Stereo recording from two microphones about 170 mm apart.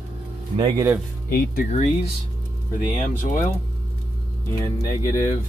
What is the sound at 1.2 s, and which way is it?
Speech, 60° left (ahead or behind).